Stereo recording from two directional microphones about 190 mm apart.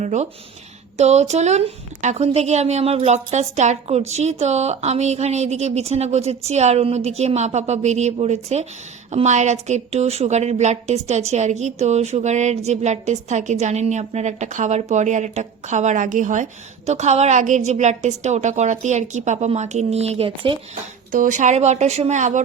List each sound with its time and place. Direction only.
0.0 s a woman's voice: 40° right (ahead or behind)
21.1 s a woman's voice: 45° right (ahead or behind)